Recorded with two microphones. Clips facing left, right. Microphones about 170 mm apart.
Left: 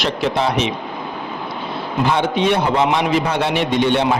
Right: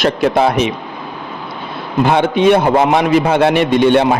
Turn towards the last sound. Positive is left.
turn(degrees=-55)  # may be behind; listen again after turning